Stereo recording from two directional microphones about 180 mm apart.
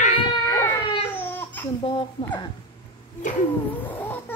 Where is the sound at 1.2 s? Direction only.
10° left (ahead or behind).